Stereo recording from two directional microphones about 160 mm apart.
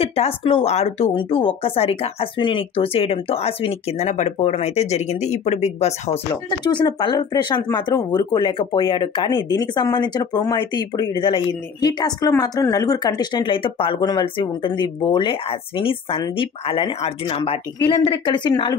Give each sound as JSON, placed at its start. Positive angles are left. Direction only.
{"t": 0.0, "sound": "speech", "side_deg": 40}
{"t": 6.6, "sound": "speech", "side_deg": 25}